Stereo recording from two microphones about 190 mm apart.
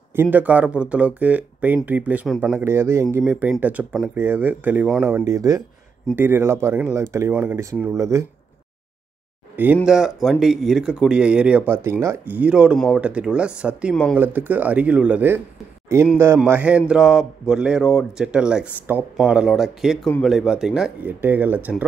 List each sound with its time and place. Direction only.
0.1 s speech: 10° right (ahead or behind)
9.8 s speech: 5° right (ahead or behind)